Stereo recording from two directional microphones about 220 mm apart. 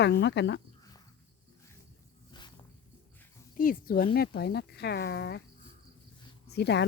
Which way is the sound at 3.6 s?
40° left (ahead or behind).